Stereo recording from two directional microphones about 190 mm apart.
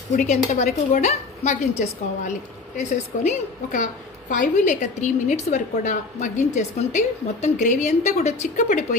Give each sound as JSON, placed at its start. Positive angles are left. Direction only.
{"t": 0.1, "sound": "a woman's voice", "side_deg": 35}